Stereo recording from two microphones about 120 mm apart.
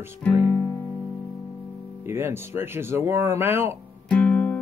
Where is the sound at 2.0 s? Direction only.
20° right (ahead or behind).